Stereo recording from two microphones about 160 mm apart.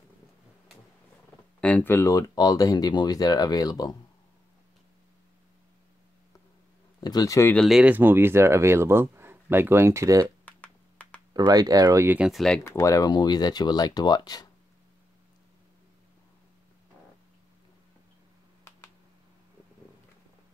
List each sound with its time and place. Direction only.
1.6 s speech: 10° left (ahead or behind)
7.0 s speech: 25° left (ahead or behind)
7.5 s speech: centre (ahead or behind); by 10.2 s 20° right (ahead or behind)
10.2 s computer keyboard: 10° left (ahead or behind)
11.3 s speech: 25° right (ahead or behind)
12.2 s speech: centre (ahead or behind)
12.6 s speech: 20° left (ahead or behind)